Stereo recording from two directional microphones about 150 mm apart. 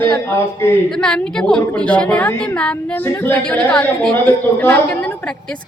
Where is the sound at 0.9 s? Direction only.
5° left (ahead or behind).